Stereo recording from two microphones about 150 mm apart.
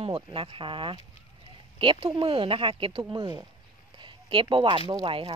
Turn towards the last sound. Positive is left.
turn(degrees=-35)  # may be behind; listen again after turning